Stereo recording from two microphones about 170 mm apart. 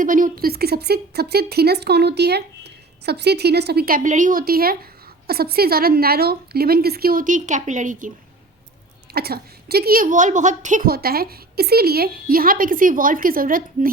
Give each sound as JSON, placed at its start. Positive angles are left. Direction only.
{"t": 0.0, "sound": "a woman's voice", "side_deg": -50}
{"t": 9.1, "sound": "a woman's voice", "side_deg": -65}